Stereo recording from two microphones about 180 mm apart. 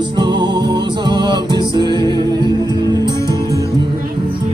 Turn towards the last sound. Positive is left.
turn(degrees=-25)  # may be behind; listen again after turning